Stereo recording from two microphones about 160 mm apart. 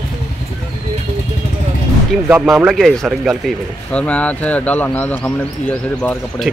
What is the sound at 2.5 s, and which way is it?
Speech, centre (ahead or behind).